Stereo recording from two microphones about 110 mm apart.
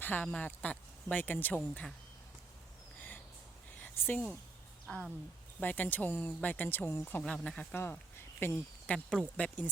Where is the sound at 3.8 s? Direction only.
20° left (ahead or behind).